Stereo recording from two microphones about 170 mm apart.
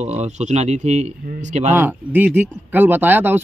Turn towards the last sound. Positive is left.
turn(degrees=-10)  # may be behind; listen again after turning